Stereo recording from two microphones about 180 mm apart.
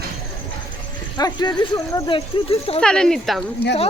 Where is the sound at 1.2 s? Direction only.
25° left (ahead or behind).